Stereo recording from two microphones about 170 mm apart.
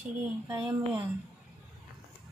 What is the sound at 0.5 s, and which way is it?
Speech, 10° right (ahead or behind).